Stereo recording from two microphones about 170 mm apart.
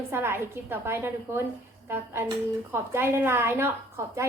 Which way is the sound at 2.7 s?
15° right (ahead or behind).